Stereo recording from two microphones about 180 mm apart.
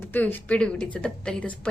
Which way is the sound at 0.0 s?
10° left (ahead or behind).